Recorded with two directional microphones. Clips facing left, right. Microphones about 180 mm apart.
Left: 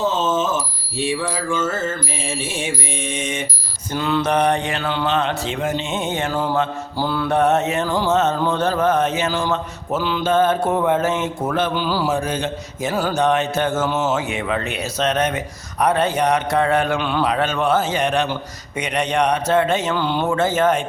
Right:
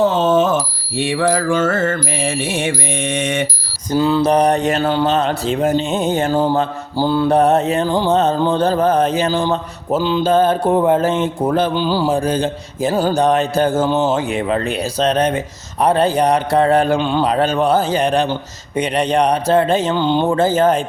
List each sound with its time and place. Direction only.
0.0 s alarm: 60° right (ahead or behind)
0.9 s mantra: 65° right (ahead or behind)
3.9 s speech: 30° right (ahead or behind)